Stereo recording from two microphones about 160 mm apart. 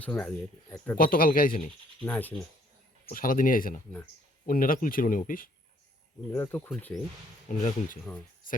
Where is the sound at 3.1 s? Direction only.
60° left (ahead or behind).